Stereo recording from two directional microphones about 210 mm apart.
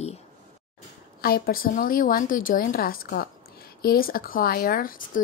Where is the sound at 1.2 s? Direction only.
45° left (ahead or behind).